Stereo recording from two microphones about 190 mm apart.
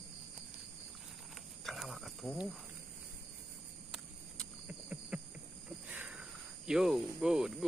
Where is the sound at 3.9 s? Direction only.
5° right (ahead or behind).